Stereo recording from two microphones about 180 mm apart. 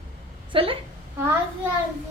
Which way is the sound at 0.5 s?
30° right (ahead or behind).